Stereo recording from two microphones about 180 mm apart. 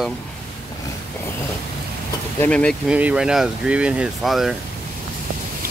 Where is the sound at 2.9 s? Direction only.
5° right (ahead or behind).